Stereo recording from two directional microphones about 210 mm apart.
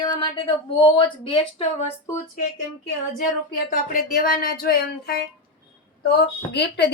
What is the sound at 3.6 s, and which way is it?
A woman's voice, 40° left (ahead or behind).